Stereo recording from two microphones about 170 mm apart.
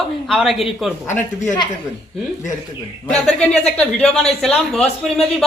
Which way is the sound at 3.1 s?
5° left (ahead or behind).